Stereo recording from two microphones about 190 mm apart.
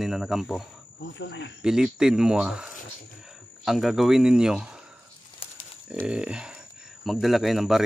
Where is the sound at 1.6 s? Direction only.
5° right (ahead or behind).